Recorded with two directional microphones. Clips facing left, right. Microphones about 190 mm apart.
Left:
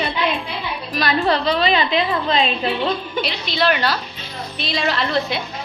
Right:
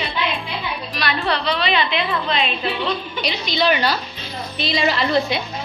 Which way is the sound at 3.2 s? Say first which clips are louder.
Right 2 dB; centre (ahead or behind).